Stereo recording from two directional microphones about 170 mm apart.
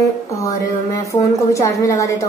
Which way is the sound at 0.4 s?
20° left (ahead or behind).